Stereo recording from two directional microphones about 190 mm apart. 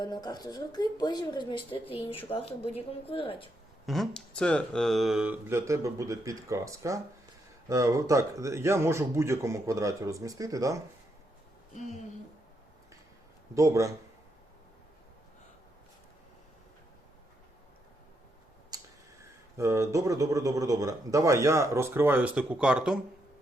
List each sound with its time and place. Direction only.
0.0 s speech: 20° left (ahead or behind)
3.8 s speech: centre (ahead or behind); by 10.8 s 15° right (ahead or behind)
13.5 s speech: 15° right (ahead or behind)
18.7 s a sound: 20° right (ahead or behind)
19.5 s speech: 15° right (ahead or behind)